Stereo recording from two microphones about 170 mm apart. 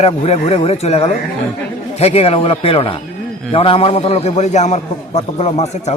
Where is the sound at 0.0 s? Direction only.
35° left (ahead or behind).